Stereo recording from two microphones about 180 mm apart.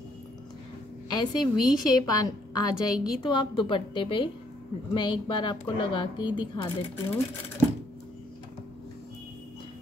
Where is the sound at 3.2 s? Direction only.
25° left (ahead or behind).